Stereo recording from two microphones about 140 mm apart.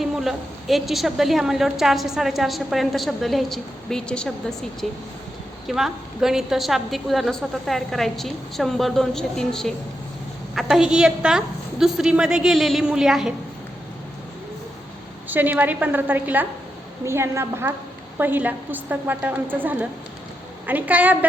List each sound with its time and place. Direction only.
0.0 s a woman's voice: centre (ahead or behind)
15.3 s a woman's voice: 10° right (ahead or behind)